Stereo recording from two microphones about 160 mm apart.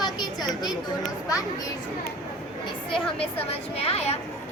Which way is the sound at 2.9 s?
35° left (ahead or behind).